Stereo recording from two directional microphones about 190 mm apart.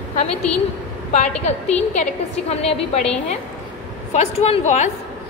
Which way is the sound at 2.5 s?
30° left (ahead or behind).